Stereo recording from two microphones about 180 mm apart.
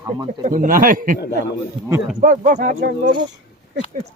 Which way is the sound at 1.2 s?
65° left (ahead or behind).